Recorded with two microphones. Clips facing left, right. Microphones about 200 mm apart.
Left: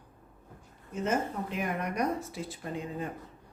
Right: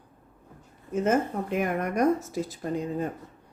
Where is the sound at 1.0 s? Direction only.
50° right (ahead or behind).